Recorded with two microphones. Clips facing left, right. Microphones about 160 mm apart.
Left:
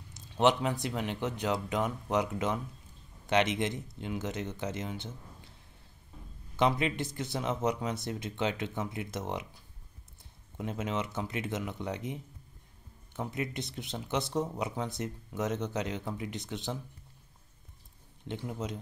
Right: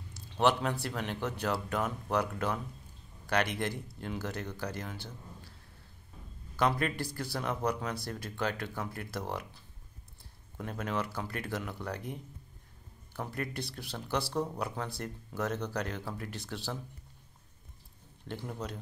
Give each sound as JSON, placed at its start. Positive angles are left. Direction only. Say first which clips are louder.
{"t": 0.1, "sound": "speech", "louder": "left 2 dB", "side_deg": 20}
{"t": 6.5, "sound": "speech", "louder": "left 2 dB", "side_deg": 20}
{"t": 10.6, "sound": "speech", "louder": "left 1 dB", "side_deg": 20}
{"t": 13.3, "sound": "speech", "louder": "left 1 dB", "side_deg": 20}
{"t": 18.2, "sound": "speech", "louder": "left 2 dB", "side_deg": 15}